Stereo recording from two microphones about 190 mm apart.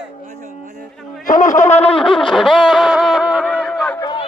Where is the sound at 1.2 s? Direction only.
40° left (ahead or behind).